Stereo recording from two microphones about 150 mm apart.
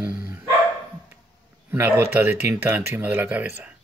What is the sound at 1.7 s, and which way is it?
Speech, 15° right (ahead or behind).